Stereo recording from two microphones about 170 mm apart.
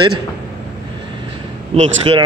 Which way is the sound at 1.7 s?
35° right (ahead or behind).